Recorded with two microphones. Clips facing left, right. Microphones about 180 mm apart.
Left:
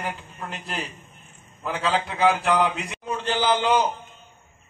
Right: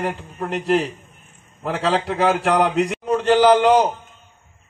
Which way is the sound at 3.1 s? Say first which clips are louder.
Right 9 dB; 65° right (ahead or behind).